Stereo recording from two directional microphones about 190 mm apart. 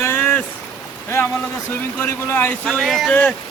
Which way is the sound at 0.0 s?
10° left (ahead or behind).